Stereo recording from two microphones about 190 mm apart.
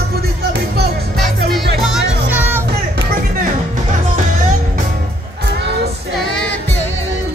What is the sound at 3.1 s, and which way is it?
Music, 45° right (ahead or behind).